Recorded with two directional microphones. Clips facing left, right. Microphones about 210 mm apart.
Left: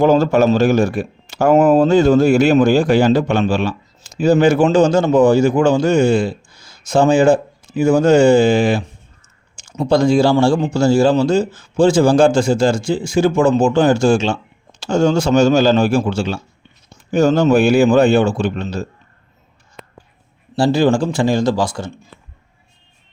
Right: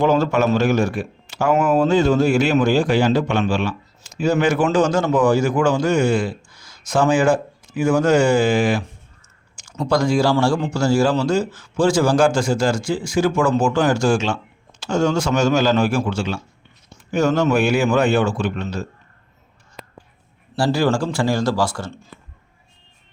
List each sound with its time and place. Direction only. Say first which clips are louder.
0.0 s a man's voice: left 5 dB; 35° left (ahead or behind)
20.6 s speech: left 5 dB; 20° left (ahead or behind)